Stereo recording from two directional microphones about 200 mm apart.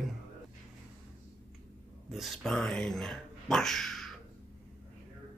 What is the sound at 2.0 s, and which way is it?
Speech, centre (ahead or behind).